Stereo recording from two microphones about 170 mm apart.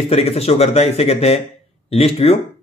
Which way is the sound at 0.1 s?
35° left (ahead or behind).